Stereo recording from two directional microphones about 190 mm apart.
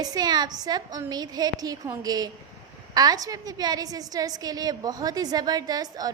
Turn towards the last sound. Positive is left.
turn(degrees=-20)  # may be behind; listen again after turning